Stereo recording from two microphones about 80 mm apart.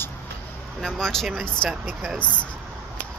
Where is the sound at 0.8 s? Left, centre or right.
Centre.